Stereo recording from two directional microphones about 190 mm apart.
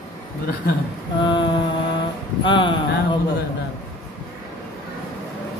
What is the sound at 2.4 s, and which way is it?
Speech, 25° left (ahead or behind).